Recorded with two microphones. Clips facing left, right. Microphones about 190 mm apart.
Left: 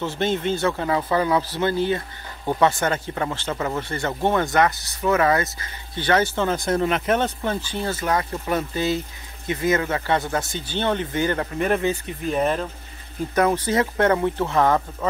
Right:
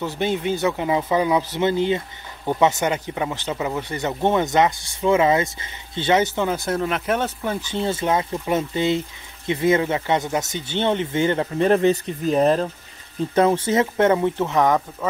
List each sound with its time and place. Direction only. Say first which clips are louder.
0.0 s speech: even; 15° right (ahead or behind)
7.6 s speech: right 3 dB; 20° right (ahead or behind)